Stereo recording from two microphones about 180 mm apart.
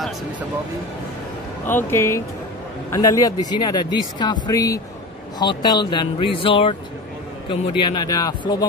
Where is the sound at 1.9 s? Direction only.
15° left (ahead or behind).